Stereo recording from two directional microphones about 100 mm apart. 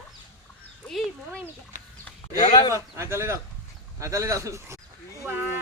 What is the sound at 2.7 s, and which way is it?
A child's voice, 25° right (ahead or behind).